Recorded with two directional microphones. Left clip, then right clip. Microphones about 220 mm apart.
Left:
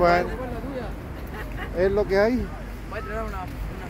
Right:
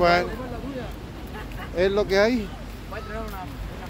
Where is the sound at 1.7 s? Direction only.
5° right (ahead or behind).